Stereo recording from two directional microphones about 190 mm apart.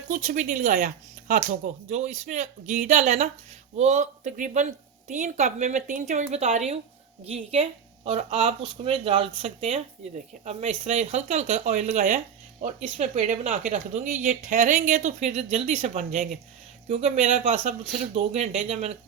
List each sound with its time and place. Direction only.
0.1 s speech: 40° right (ahead or behind)